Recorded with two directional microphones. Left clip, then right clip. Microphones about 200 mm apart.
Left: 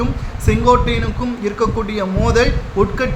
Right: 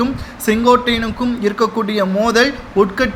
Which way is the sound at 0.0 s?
20° right (ahead or behind).